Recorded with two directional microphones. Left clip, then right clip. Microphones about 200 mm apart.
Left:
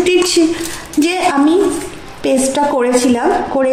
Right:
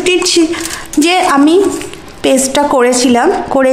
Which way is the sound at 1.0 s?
30° right (ahead or behind).